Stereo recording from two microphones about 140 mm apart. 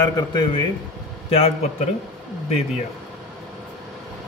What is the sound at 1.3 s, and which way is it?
Speech, 45° left (ahead or behind).